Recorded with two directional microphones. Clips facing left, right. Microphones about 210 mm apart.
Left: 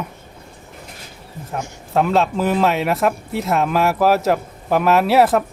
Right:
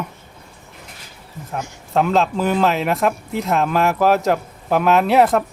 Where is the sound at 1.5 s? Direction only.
Centre (ahead or behind).